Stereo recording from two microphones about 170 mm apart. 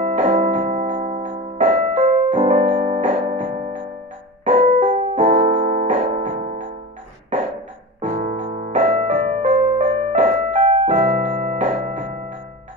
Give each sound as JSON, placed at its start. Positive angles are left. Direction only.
{"t": 0.0, "sound": "music", "side_deg": -40}
{"t": 4.5, "sound": "piano", "side_deg": -40}
{"t": 7.3, "sound": "music", "side_deg": -40}